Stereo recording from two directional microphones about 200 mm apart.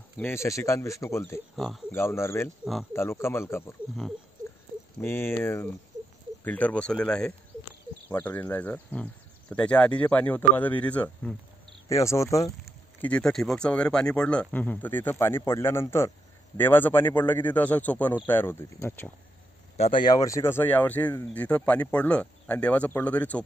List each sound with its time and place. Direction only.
0.2 s speech: 15° left (ahead or behind)
1.6 s speech: centre (ahead or behind)
2.0 s speech: 15° left (ahead or behind)
2.6 s speech: 5° right (ahead or behind)
2.9 s speech: 15° left (ahead or behind)
5.0 s speech: 10° left (ahead or behind)
13.0 s speech: 5° left (ahead or behind)
19.8 s speech: 25° left (ahead or behind); by 23.4 s 5° left (ahead or behind)